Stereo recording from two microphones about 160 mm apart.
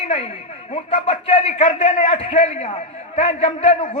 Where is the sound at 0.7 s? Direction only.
40° left (ahead or behind).